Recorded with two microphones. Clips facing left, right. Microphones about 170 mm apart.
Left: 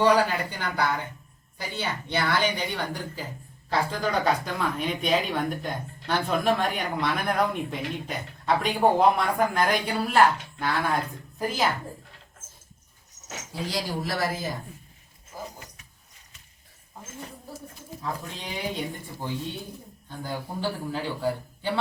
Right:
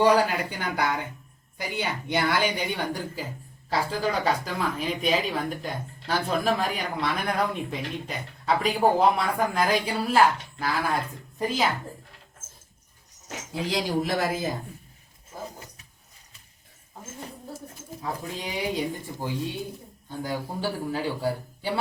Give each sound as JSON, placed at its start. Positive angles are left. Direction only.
{"t": 0.0, "sound": "speech", "side_deg": -10}
{"t": 3.7, "sound": "speech", "side_deg": 0}
{"t": 13.5, "sound": "speech", "side_deg": -20}
{"t": 18.0, "sound": "speech", "side_deg": -10}
{"t": 20.6, "sound": "speech", "side_deg": -10}